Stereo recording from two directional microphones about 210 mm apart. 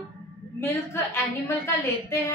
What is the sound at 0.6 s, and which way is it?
A woman's voice, 10° left (ahead or behind).